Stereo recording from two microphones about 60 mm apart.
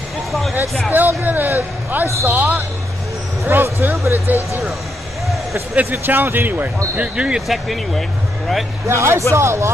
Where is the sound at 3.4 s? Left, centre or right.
Right.